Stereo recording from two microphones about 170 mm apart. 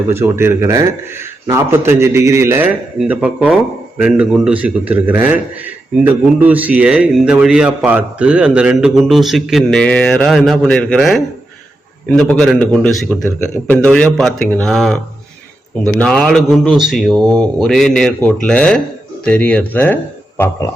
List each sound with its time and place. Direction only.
0.1 s speech: 15° right (ahead or behind); by 20.0 s 10° left (ahead or behind)